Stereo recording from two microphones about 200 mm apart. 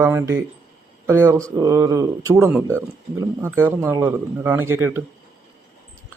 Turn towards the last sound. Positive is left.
turn(degrees=-15)  # may be behind; listen again after turning